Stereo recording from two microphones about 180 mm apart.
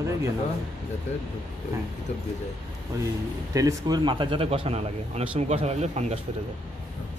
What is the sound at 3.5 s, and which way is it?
Speech, 20° right (ahead or behind).